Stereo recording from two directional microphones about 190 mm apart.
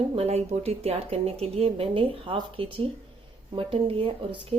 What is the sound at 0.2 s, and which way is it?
Speech, 35° right (ahead or behind).